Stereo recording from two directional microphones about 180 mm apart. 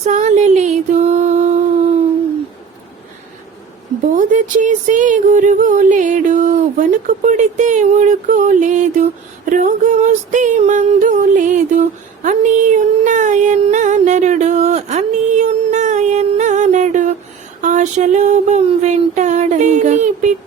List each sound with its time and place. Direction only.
0.0 s music: 40° right (ahead or behind)
4.1 s speech: 45° right (ahead or behind)
9.5 s female singing: 45° right (ahead or behind)
17.6 s a sound: 40° right (ahead or behind)